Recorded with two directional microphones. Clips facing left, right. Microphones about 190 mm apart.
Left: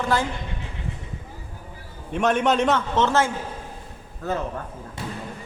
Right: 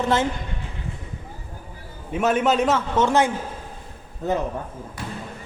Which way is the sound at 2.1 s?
5° right (ahead or behind).